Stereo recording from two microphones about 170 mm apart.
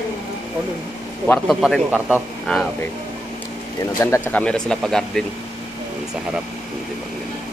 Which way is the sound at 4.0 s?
15° left (ahead or behind).